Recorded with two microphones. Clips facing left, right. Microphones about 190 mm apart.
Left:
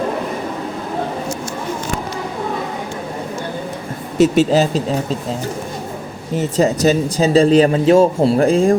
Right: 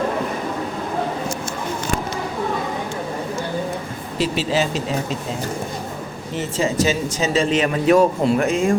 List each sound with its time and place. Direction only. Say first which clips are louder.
4.2 s speech: left 8 dB; 40° left (ahead or behind)
6.3 s speech: left 5 dB; 40° left (ahead or behind)